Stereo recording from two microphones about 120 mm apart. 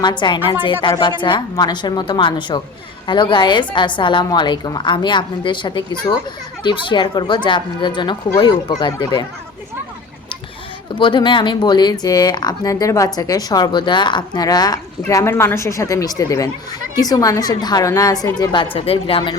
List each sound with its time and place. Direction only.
0.0 s a woman's voice: 40° left (ahead or behind)
10.9 s a woman's voice: 40° left (ahead or behind)
15.1 s a woman's voice: 20° left (ahead or behind); by 19.4 s 45° left (ahead or behind)